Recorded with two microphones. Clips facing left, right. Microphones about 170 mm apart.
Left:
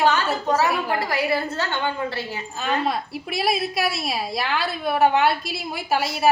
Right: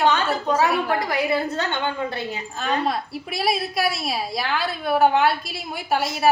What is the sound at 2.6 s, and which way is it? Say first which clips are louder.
A woman's voice: even; centre (ahead or behind).